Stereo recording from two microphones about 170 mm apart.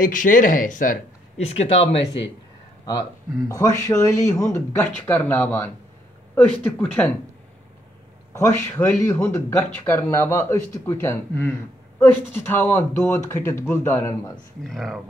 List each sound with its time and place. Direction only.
0.0 s speech: 50° left (ahead or behind)
1.4 s speech: 35° left (ahead or behind)
2.8 s speech: 25° left (ahead or behind)
8.3 s speech: 15° left (ahead or behind)
14.3 s speech: centre (ahead or behind)